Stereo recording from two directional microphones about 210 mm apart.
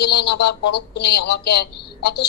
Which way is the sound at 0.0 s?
50° left (ahead or behind).